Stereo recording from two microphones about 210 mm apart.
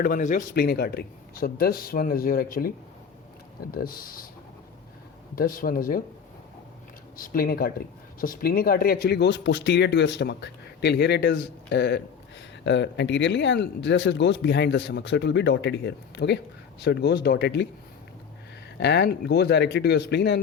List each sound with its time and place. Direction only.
0.0 s speech: 40° left (ahead or behind)
3.8 s speech: 45° left (ahead or behind)
5.3 s speech: 45° left (ahead or behind)
7.2 s speech: 45° left (ahead or behind)
18.8 s speech: 55° left (ahead or behind)